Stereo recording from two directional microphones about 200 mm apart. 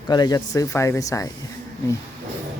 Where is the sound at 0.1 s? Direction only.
20° left (ahead or behind).